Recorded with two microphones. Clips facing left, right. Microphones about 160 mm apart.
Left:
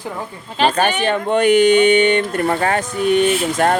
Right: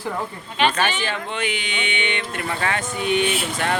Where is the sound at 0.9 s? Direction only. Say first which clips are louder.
Left 10 dB; 55° left (ahead or behind).